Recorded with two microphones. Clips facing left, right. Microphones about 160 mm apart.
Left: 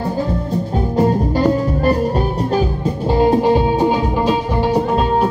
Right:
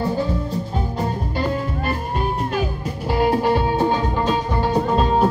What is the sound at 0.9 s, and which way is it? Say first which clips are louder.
Music: left 12 dB; 45° left (ahead or behind).